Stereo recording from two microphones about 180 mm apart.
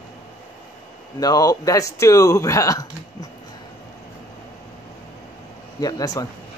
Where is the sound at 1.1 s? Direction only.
20° left (ahead or behind).